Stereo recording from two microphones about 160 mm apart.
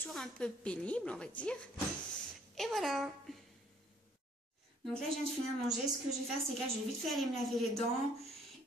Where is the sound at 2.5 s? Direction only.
Centre (ahead or behind).